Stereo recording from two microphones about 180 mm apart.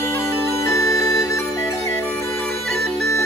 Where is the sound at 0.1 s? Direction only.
15° left (ahead or behind).